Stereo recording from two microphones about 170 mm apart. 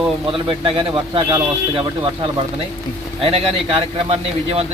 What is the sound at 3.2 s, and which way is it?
Speech, 35° right (ahead or behind).